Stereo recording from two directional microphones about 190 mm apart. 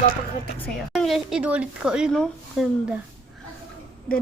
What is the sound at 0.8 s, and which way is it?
Speech, centre (ahead or behind).